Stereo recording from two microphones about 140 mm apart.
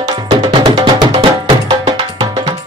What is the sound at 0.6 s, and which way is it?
Music, 35° right (ahead or behind).